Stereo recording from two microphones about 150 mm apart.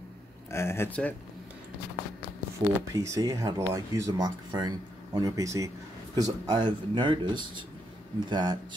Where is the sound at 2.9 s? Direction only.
20° right (ahead or behind).